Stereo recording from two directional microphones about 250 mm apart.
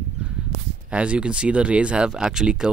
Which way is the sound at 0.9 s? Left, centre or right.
Centre.